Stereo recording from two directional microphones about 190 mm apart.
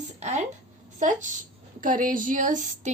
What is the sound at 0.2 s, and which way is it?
Speech, 35° right (ahead or behind).